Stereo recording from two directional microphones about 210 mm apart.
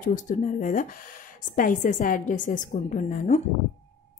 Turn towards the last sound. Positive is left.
turn(degrees=35)  # may be behind; listen again after turning